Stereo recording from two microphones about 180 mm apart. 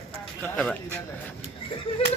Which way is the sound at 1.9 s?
30° left (ahead or behind).